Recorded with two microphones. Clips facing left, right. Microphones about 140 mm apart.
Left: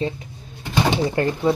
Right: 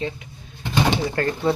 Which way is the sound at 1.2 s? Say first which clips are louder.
Left 2 dB; 15° left (ahead or behind).